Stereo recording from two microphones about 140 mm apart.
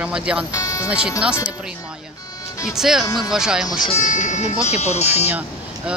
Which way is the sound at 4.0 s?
65° left (ahead or behind).